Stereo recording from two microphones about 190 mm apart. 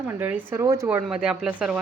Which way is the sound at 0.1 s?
10° right (ahead or behind).